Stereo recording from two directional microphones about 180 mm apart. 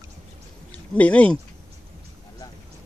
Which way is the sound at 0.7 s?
10° left (ahead or behind).